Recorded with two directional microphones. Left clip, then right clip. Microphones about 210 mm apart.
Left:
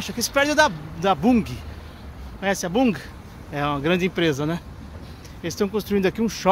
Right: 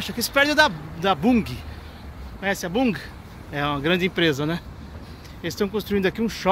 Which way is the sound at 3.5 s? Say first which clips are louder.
Even; 10° left (ahead or behind).